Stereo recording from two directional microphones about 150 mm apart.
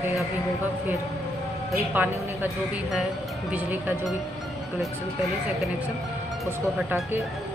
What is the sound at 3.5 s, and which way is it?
Speech, 15° right (ahead or behind).